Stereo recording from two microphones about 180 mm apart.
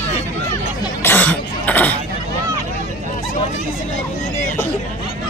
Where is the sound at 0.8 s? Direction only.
10° left (ahead or behind).